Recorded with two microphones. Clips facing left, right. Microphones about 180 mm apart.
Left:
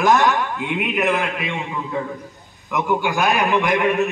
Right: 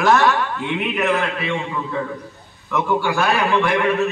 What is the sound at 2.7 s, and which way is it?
A man's voice, 15° left (ahead or behind).